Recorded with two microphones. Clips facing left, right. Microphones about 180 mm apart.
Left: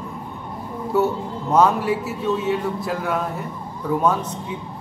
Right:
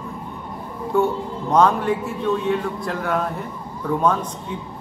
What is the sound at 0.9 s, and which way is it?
A man's voice, 5° left (ahead or behind).